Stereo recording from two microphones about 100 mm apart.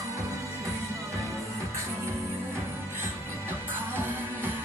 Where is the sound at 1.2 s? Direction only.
30° right (ahead or behind).